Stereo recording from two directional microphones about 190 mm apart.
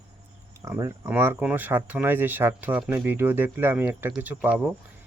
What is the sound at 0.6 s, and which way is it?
Speech, 15° right (ahead or behind).